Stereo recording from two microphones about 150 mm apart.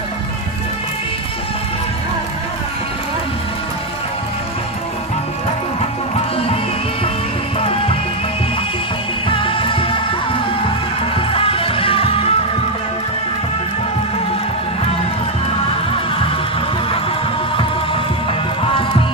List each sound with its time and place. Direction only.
6.1 s music: 40° left (ahead or behind)
9.3 s music: 35° left (ahead or behind)
11.1 s music: 40° left (ahead or behind)
18.6 s music: 35° left (ahead or behind)